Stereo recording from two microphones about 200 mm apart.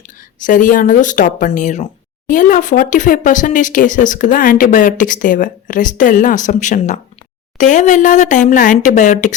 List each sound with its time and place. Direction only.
0.4 s speech: 40° left (ahead or behind)